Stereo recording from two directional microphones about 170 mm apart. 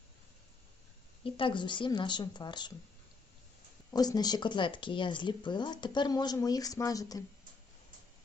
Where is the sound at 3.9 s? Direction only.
25° left (ahead or behind).